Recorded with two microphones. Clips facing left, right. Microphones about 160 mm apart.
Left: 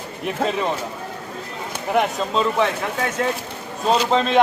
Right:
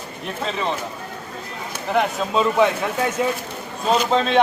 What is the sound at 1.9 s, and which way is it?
Speech, centre (ahead or behind).